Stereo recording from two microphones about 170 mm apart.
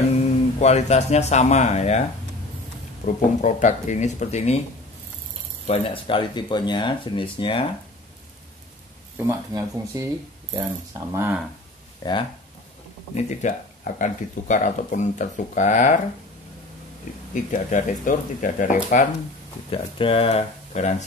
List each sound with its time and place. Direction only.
0.2 s speech: 40° left (ahead or behind)
3.1 s speech: 45° left (ahead or behind)
5.7 s speech: 30° left (ahead or behind)
9.5 s speech: 20° right (ahead or behind)
12.0 s speech: 25° left (ahead or behind)
13.1 s speech: 45° left (ahead or behind)
17.3 s speech: 50° left (ahead or behind)
19.7 s speech: 35° left (ahead or behind)